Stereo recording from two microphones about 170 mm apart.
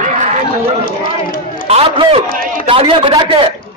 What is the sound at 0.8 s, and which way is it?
Run, 50° left (ahead or behind).